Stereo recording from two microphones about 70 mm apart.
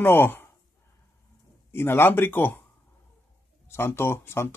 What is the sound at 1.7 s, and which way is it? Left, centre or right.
Speech, left.